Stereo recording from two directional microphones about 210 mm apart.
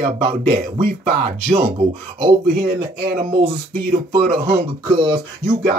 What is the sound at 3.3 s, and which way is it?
Speech, 25° right (ahead or behind).